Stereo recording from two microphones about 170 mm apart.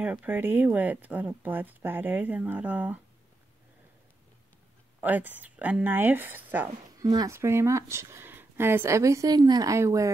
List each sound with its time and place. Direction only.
0.0 s speech: 10° right (ahead or behind)
5.0 s speech: 10° right (ahead or behind)